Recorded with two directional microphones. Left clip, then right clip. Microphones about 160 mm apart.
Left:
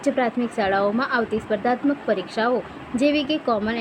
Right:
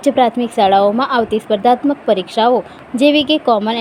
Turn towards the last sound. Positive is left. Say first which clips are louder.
# right 9 dB
turn(degrees=-25)  # may be behind; listen again after turning